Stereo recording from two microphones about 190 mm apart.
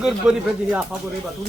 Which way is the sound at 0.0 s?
5° right (ahead or behind).